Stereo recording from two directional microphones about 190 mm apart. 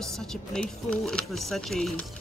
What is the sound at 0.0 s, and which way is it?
Speech, 5° left (ahead or behind).